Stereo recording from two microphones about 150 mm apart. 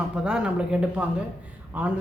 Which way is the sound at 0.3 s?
5° right (ahead or behind).